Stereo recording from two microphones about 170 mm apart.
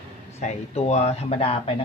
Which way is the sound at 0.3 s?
40° left (ahead or behind).